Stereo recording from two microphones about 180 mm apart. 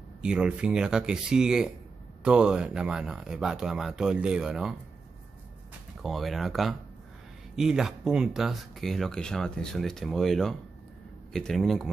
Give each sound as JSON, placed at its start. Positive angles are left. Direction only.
{"t": 0.2, "sound": "speech", "side_deg": -5}
{"t": 6.0, "sound": "speech", "side_deg": 0}